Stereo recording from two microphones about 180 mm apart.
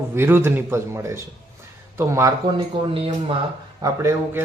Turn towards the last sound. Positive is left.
turn(degrees=-15)  # may be behind; listen again after turning